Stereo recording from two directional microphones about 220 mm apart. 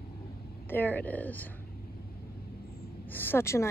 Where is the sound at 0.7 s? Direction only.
10° left (ahead or behind).